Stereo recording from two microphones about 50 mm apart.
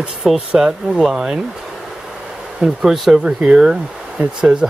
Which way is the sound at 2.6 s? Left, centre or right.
Centre.